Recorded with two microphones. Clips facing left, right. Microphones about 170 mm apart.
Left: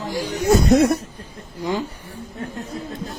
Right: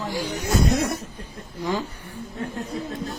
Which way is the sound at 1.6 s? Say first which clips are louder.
Left 2 dB; 15° left (ahead or behind).